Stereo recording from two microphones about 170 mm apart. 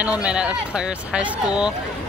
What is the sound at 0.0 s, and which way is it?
Speech, 5° right (ahead or behind).